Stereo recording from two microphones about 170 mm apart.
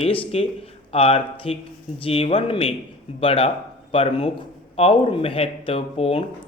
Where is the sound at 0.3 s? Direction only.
35° left (ahead or behind).